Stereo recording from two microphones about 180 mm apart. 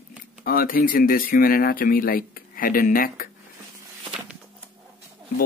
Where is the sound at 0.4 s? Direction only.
55° left (ahead or behind).